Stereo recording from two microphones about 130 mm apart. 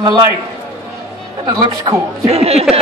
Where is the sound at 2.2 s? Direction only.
50° right (ahead or behind).